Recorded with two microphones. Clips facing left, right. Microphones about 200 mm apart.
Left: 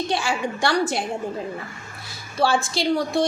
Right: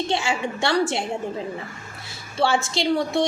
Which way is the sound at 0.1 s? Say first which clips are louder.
Even; 25° right (ahead or behind).